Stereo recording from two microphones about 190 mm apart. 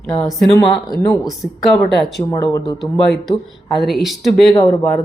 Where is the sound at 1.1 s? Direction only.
Centre (ahead or behind).